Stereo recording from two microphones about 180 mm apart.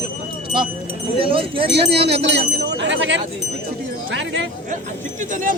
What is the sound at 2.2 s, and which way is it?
Speech, 75° right (ahead or behind).